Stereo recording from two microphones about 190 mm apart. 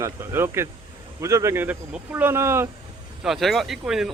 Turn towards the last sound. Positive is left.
turn(degrees=0)  # may be behind; listen again after turning